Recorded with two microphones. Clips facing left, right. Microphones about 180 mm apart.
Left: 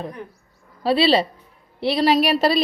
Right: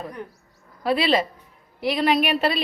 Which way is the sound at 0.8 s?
30° left (ahead or behind).